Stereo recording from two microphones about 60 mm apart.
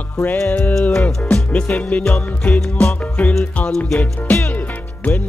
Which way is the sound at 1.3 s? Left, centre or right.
Centre.